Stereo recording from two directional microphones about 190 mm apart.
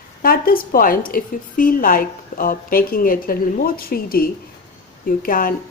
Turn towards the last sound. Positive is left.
turn(degrees=50)  # may be behind; listen again after turning